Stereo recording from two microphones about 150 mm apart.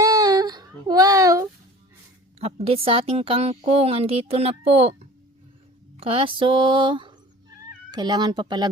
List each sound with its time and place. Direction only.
0.0 s child singing: 25° right (ahead or behind)
2.4 s a woman's voice: 40° right (ahead or behind)
6.0 s a woman's voice: 40° right (ahead or behind)